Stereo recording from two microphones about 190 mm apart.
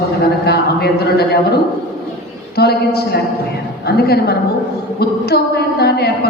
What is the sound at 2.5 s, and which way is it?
A woman's voice, 55° left (ahead or behind).